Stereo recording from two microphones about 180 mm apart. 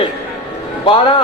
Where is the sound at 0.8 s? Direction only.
30° left (ahead or behind).